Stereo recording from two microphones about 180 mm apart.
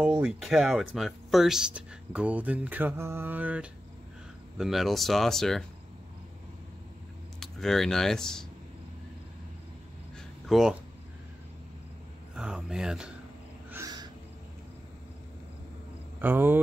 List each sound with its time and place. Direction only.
0.0 s speech: 5° right (ahead or behind)
7.3 s speech: centre (ahead or behind)
10.1 s a sound: centre (ahead or behind)
12.4 s speech: 5° right (ahead or behind)
13.7 s owl: 15° right (ahead or behind)
16.2 s speech: 10° right (ahead or behind)